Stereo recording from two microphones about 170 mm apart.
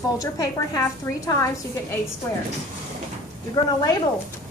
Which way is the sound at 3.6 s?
20° left (ahead or behind).